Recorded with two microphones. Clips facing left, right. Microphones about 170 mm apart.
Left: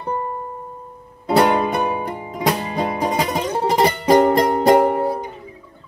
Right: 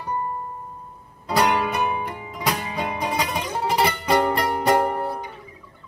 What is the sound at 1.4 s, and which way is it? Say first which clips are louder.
Music: left 3 dB; 30° left (ahead or behind).